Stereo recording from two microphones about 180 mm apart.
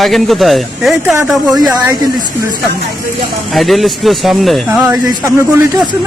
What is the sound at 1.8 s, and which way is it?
Speech, 20° right (ahead or behind).